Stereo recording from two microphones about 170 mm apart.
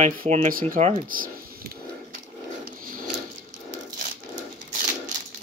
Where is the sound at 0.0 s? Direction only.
45° right (ahead or behind).